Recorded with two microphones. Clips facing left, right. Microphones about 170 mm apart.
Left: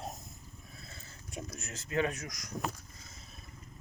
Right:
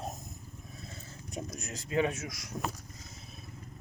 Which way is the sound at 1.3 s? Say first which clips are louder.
Right 3 dB; 20° right (ahead or behind).